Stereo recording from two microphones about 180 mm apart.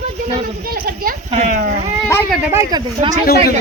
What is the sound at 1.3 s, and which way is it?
Speech, 45° right (ahead or behind).